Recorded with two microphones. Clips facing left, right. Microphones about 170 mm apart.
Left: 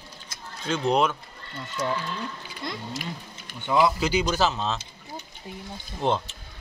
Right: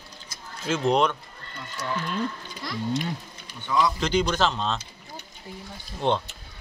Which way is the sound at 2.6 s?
25° left (ahead or behind).